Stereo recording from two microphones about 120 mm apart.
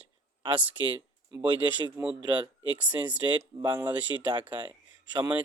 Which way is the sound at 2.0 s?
30° right (ahead or behind).